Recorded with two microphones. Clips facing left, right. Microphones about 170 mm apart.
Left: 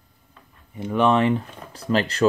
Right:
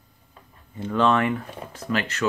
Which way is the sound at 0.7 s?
15° left (ahead or behind).